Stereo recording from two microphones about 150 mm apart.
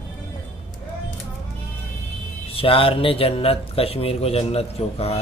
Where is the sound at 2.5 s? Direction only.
40° left (ahead or behind).